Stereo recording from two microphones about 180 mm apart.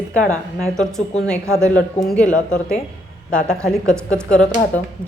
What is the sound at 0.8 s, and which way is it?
Speech, 5° left (ahead or behind).